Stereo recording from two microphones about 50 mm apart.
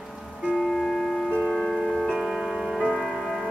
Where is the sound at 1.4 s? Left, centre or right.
Centre.